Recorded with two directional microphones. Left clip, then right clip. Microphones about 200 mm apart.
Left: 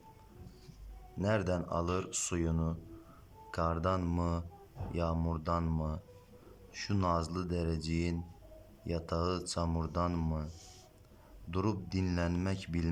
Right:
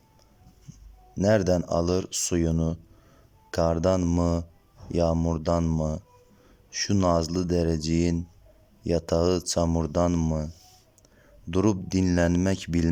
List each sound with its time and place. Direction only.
1.2 s speech: 30° right (ahead or behind)
11.5 s speech: 35° right (ahead or behind)